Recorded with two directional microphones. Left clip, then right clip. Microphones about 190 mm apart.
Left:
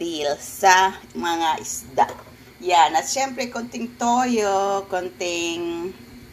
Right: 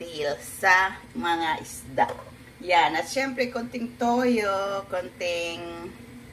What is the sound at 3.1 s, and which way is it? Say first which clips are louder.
A woman's voice: left 2 dB; 25° left (ahead or behind).